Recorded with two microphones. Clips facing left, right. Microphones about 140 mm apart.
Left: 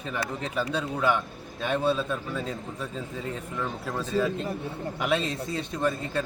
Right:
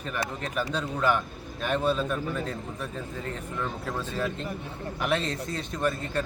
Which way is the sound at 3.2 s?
10° left (ahead or behind).